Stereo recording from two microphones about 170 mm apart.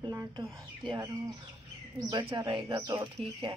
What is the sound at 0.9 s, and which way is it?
Speech, 20° right (ahead or behind).